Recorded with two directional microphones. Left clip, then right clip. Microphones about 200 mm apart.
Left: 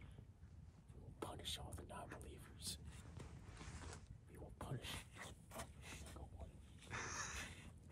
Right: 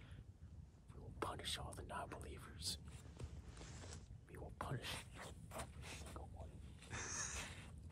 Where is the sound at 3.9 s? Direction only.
5° right (ahead or behind).